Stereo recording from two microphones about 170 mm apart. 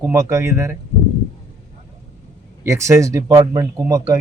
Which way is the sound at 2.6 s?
15° right (ahead or behind).